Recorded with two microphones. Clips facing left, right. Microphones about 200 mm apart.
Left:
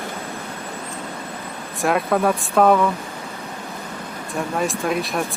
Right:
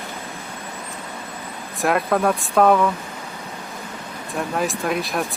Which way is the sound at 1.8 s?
Centre (ahead or behind).